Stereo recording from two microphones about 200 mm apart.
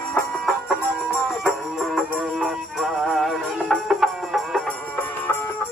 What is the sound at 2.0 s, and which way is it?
Music, centre (ahead or behind).